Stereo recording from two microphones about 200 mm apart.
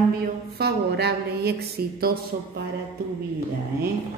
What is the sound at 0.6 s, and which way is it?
Speech, 55° right (ahead or behind).